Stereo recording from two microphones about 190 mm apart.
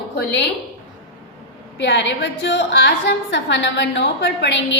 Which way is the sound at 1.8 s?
65° left (ahead or behind).